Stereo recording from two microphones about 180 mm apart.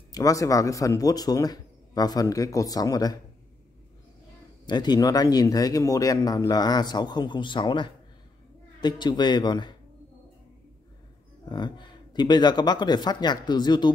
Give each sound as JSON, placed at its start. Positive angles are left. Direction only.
{"t": 0.1, "sound": "speech", "side_deg": 20}
{"t": 4.6, "sound": "speech", "side_deg": 25}
{"t": 11.4, "sound": "speech", "side_deg": 25}